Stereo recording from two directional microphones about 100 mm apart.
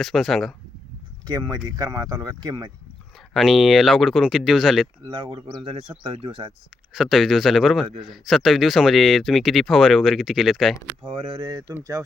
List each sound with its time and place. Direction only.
0.0 s speech: centre (ahead or behind)
1.3 s speech: 40° right (ahead or behind)
3.3 s speech: centre (ahead or behind)
5.0 s speech: 50° right (ahead or behind)
6.9 s speech: centre (ahead or behind)
11.0 s speech: 60° right (ahead or behind)
11.7 s speech: 35° right (ahead or behind)